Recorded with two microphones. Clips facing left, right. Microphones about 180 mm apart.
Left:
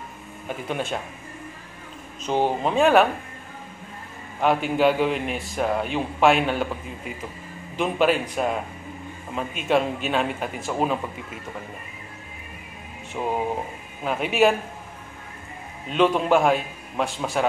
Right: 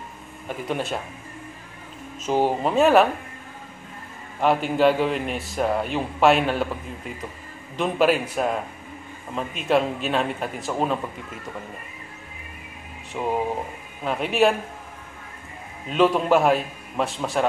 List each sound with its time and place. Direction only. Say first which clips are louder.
0.7 s a man's voice: right 1 dB; centre (ahead or behind)
2.2 s a man's voice: right 1 dB; 5° right (ahead or behind)
4.4 s a man's voice: right 1 dB; centre (ahead or behind)
13.2 s a man's voice: right 1 dB; centre (ahead or behind)
15.9 s a man's voice: right 1 dB; centre (ahead or behind)